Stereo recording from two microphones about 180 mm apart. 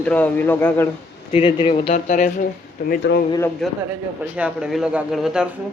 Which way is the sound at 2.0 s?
45° left (ahead or behind).